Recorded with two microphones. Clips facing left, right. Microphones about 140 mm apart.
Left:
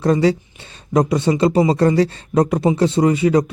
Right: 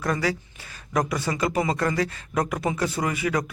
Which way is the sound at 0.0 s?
25° left (ahead or behind).